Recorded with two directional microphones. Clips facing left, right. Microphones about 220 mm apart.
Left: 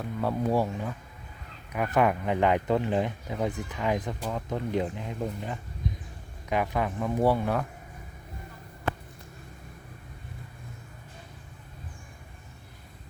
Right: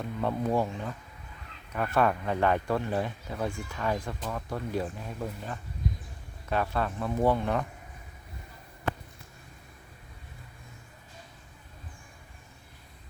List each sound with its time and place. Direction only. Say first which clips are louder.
0.0 s speech: left 1 dB; 5° left (ahead or behind)